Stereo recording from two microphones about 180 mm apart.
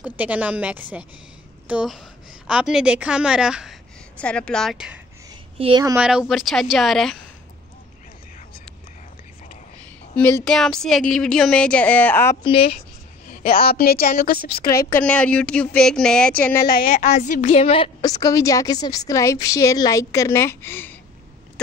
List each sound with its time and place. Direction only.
0.0 s a woman's voice: 10° right (ahead or behind)
5.3 s a sound: 25° right (ahead or behind)
5.9 s a woman's voice: 5° right (ahead or behind)
10.1 s a woman's voice: 10° left (ahead or behind)
12.4 s a woman's voice: 30° left (ahead or behind)
13.3 s a woman's voice: 55° left (ahead or behind)
14.8 s speech: 15° left (ahead or behind)
16.6 s a woman's voice: 55° left (ahead or behind); by 21.0 s 10° left (ahead or behind)